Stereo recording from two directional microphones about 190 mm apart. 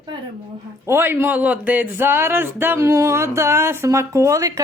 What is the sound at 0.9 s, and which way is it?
Speech, 10° right (ahead or behind).